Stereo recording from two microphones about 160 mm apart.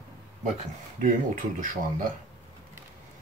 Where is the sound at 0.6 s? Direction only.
55° right (ahead or behind).